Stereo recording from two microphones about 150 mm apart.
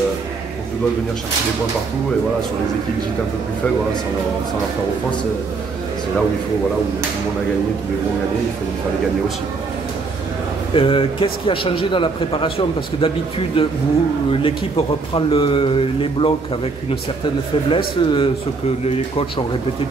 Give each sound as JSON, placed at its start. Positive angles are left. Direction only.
{"t": 10.7, "sound": "a man's voice", "side_deg": 35}
{"t": 17.6, "sound": "a man's voice", "side_deg": 35}